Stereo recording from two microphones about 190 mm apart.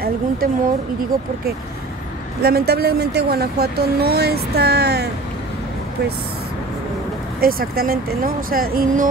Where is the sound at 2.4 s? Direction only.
55° right (ahead or behind).